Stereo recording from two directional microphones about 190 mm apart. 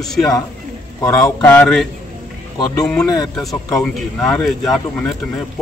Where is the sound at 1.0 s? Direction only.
15° left (ahead or behind).